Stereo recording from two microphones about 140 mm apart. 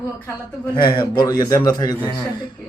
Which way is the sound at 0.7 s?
35° left (ahead or behind).